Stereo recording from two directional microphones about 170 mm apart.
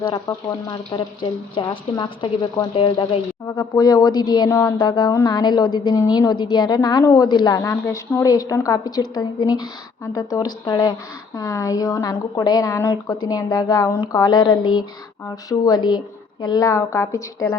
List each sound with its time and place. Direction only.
0.0 s speech: 25° left (ahead or behind)